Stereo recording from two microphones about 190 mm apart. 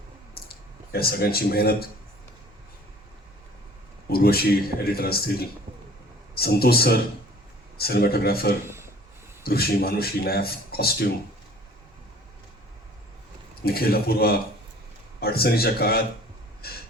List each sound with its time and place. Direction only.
0.4 s clicking: 55° left (ahead or behind)
0.9 s speech: 55° left (ahead or behind)
4.1 s speech: 55° left (ahead or behind)
8.6 s a sound: 15° right (ahead or behind)
9.4 s speech: 55° left (ahead or behind)
13.6 s speech: 55° left (ahead or behind)